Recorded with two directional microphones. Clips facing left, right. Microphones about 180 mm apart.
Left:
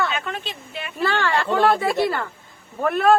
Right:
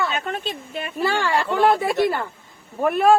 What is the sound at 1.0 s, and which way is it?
Speech, 10° right (ahead or behind).